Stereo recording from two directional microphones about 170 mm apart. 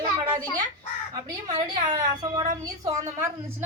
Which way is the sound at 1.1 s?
25° right (ahead or behind).